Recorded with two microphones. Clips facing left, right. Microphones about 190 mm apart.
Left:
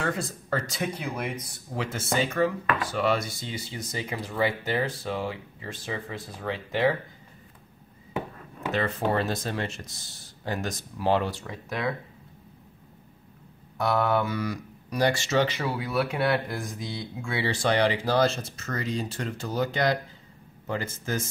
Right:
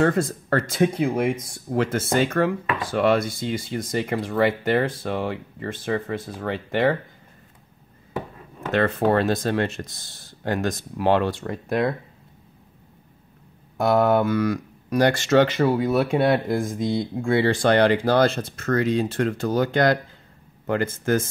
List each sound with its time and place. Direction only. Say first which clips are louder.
0.0 s speech: right 10 dB; 55° right (ahead or behind)
8.7 s speech: right 7 dB; 60° right (ahead or behind)
14.2 s speech: right 8 dB; 55° right (ahead or behind)